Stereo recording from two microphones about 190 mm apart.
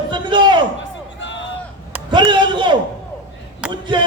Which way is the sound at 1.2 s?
75° left (ahead or behind).